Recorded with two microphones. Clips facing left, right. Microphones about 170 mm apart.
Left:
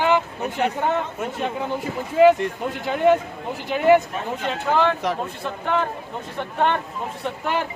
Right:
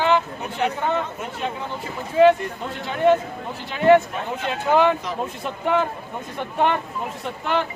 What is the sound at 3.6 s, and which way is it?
Speech, 10° left (ahead or behind).